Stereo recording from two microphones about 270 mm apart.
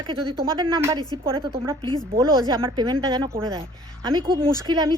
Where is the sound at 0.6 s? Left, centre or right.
Centre.